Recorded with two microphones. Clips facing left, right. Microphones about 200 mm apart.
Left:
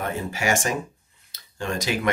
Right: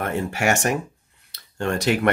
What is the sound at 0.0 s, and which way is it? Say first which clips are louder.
Speech: right 4 dB; 65° right (ahead or behind).